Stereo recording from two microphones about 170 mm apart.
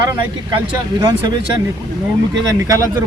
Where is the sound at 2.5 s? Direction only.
20° right (ahead or behind).